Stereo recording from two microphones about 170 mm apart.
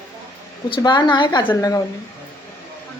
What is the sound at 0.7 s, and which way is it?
A woman's voice, 25° left (ahead or behind).